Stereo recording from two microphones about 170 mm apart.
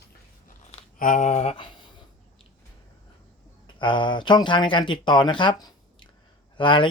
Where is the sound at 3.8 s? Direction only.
30° left (ahead or behind).